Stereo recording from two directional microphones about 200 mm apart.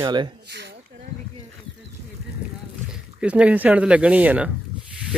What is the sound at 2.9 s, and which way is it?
Speech, 5° right (ahead or behind).